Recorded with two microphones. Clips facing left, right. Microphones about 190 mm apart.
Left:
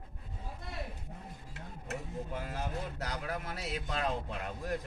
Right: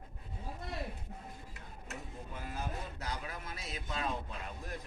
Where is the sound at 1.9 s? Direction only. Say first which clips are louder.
Left 7 dB; 75° left (ahead or behind).